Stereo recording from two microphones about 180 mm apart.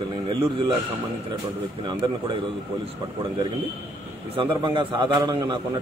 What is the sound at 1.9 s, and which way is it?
Speech, 25° right (ahead or behind).